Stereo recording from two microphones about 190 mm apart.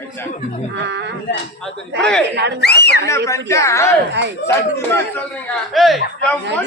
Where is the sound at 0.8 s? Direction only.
65° right (ahead or behind).